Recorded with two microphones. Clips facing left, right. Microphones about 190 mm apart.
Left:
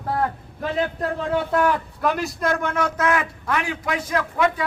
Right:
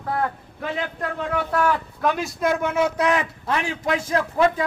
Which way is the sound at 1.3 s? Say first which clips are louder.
Left 2 dB; 25° left (ahead or behind).